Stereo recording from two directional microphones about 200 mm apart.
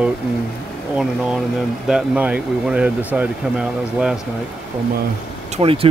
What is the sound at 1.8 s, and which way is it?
Speech, 5° right (ahead or behind).